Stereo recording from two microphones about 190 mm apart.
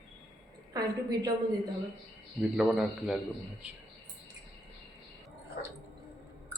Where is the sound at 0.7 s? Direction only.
20° right (ahead or behind).